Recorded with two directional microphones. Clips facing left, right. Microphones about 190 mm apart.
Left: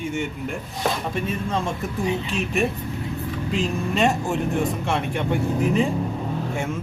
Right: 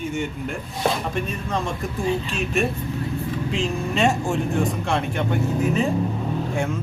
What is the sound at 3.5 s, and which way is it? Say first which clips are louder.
Speech: left 2 dB; 5° left (ahead or behind).